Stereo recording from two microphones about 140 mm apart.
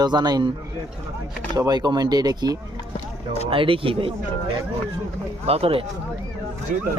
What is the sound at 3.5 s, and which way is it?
Speech, 40° right (ahead or behind).